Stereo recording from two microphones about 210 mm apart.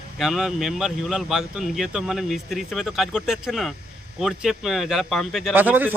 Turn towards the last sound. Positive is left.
turn(degrees=-10)  # may be behind; listen again after turning